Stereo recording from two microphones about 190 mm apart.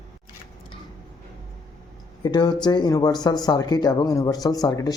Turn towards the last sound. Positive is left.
turn(degrees=20)  # may be behind; listen again after turning